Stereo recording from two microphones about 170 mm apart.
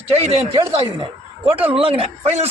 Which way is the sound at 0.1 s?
35° right (ahead or behind).